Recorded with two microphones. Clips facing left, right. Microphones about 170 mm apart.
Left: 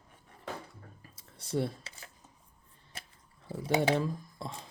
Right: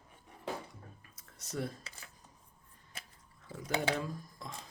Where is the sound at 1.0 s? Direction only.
30° left (ahead or behind).